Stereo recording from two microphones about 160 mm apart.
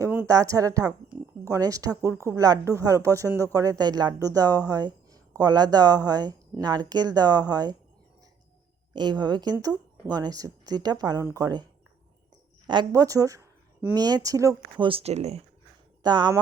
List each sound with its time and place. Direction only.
0.0 s speech: 15° right (ahead or behind)
8.9 s speech: 30° right (ahead or behind)
12.6 s speech: 30° right (ahead or behind)
14.8 s speech: 40° right (ahead or behind)
16.0 s speech: 25° right (ahead or behind)